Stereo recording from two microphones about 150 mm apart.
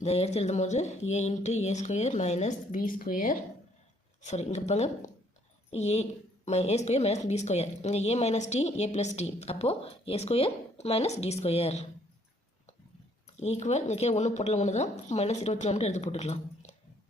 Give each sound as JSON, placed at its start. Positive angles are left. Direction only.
{"t": 0.0, "sound": "a woman's voice", "side_deg": 45}
{"t": 4.2, "sound": "a woman's voice", "side_deg": 50}
{"t": 13.3, "sound": "a woman's voice", "side_deg": 45}